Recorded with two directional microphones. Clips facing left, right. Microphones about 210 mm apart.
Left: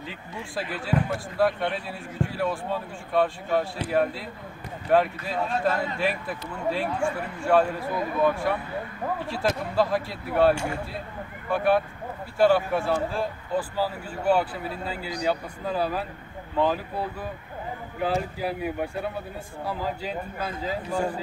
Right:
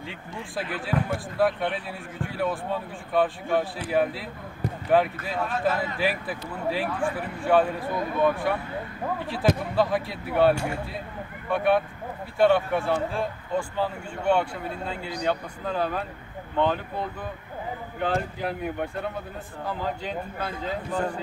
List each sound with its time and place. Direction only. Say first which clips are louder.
0.0 s a man's voice: even; centre (ahead or behind)